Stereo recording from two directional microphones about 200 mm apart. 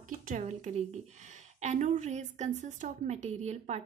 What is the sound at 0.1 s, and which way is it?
Speech, 40° right (ahead or behind).